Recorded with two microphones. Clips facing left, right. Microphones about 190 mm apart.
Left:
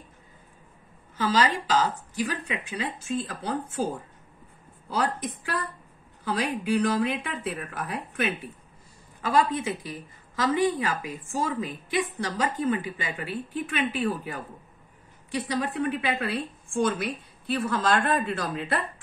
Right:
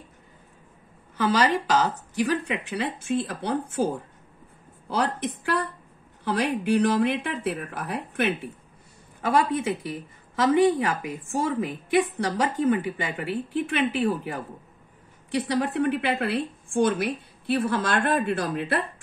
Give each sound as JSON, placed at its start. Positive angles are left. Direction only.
{"t": 1.1, "sound": "a woman's voice", "side_deg": -60}